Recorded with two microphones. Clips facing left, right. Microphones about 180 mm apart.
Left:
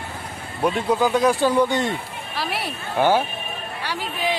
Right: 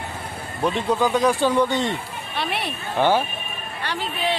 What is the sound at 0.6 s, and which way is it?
Speech, 10° left (ahead or behind).